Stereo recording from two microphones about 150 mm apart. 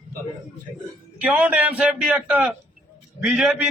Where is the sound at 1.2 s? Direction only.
10° right (ahead or behind).